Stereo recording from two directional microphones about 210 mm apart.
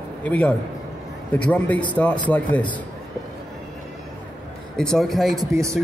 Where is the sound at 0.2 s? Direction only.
5° left (ahead or behind).